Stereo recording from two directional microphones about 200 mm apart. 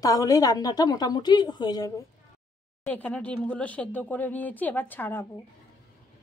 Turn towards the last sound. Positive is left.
turn(degrees=10)  # may be behind; listen again after turning